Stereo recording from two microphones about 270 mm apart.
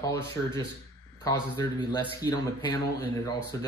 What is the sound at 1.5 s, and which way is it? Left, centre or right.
Speech, centre.